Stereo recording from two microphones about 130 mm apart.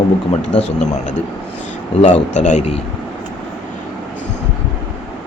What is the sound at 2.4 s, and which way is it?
Speech, 65° left (ahead or behind).